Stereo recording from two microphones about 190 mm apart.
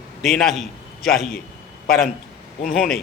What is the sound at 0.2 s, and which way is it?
Speech, centre (ahead or behind).